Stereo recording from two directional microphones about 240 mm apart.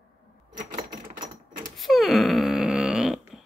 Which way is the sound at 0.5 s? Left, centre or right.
Right.